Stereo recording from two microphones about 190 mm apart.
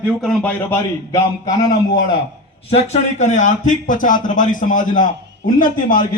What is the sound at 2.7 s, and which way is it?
A man's voice, 35° left (ahead or behind).